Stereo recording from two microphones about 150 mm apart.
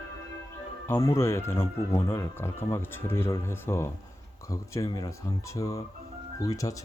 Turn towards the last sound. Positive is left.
turn(degrees=20)  # may be behind; listen again after turning